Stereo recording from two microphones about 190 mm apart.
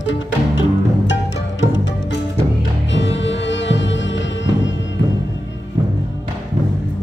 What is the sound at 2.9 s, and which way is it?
Music, 70° left (ahead or behind).